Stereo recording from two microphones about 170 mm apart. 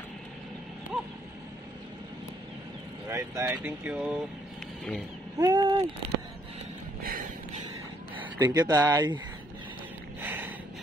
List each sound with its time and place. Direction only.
3.1 s speech: 15° right (ahead or behind)
5.4 s speech: 25° right (ahead or behind)
7.0 s a sound: 60° right (ahead or behind)
8.4 s speech: 20° right (ahead or behind)
10.2 s snort: 10° right (ahead or behind)